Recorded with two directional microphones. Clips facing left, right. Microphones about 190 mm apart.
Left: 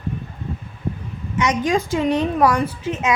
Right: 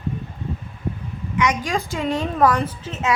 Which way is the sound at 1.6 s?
20° left (ahead or behind).